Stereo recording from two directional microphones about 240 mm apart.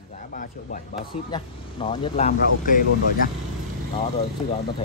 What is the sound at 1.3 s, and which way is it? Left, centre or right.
Speech, left.